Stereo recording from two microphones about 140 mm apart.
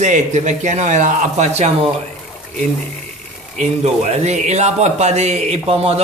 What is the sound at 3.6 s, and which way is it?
Speech, 50° right (ahead or behind).